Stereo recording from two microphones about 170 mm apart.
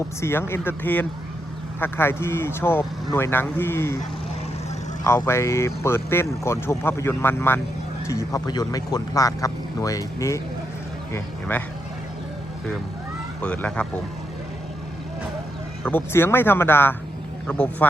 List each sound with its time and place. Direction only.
0.2 s speech: 15° left (ahead or behind)
5.0 s speech: 15° left (ahead or behind)
13.4 s speech: 5° left (ahead or behind)
15.8 s speech: 10° left (ahead or behind)